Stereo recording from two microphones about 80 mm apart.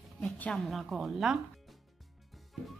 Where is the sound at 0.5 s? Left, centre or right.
Centre.